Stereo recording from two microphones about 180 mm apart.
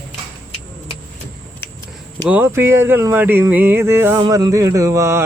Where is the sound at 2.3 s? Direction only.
10° right (ahead or behind).